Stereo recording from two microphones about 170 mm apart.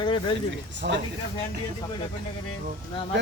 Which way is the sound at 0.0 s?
30° left (ahead or behind).